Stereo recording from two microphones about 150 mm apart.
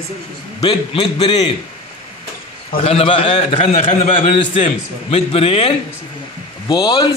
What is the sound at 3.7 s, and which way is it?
A man's voice, 55° left (ahead or behind).